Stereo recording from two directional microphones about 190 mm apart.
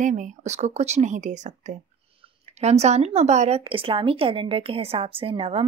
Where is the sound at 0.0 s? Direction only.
40° right (ahead or behind).